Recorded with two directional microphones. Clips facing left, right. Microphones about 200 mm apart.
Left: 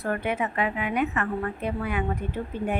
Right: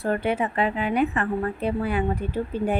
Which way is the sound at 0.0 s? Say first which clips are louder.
Right 3 dB; 30° right (ahead or behind).